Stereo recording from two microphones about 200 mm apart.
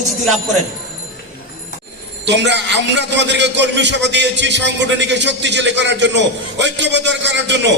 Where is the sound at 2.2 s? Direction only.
60° right (ahead or behind).